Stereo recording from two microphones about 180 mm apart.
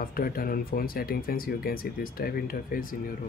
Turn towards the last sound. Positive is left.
turn(degrees=50)  # may be behind; listen again after turning